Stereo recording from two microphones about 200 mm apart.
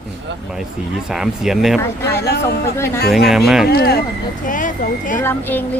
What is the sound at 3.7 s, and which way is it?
Speech, 50° left (ahead or behind).